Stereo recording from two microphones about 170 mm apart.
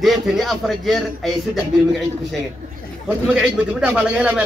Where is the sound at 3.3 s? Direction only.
5° right (ahead or behind).